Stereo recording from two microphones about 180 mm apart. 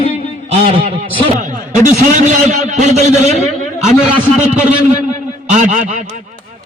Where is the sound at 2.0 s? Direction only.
45° right (ahead or behind).